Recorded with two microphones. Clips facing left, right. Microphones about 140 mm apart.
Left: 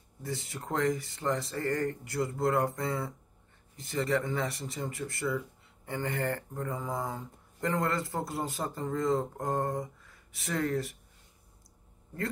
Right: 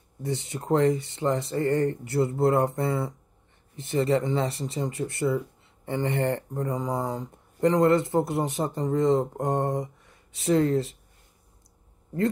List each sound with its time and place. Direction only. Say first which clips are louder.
0.2 s speech: right 7 dB; 25° right (ahead or behind)